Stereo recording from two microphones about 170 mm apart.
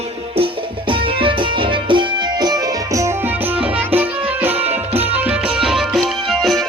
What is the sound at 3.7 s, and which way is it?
Music, 10° right (ahead or behind).